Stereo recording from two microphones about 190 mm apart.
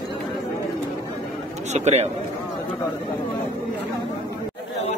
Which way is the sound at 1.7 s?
35° right (ahead or behind).